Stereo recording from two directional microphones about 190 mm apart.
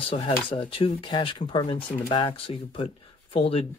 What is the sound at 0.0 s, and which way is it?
Speech, 30° left (ahead or behind).